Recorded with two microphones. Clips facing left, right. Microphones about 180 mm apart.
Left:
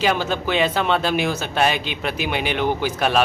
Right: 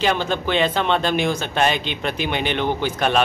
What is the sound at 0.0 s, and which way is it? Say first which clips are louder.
Speech: even; 5° left (ahead or behind).